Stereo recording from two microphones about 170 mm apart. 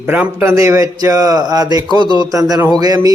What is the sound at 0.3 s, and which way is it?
A man's voice, 15° right (ahead or behind).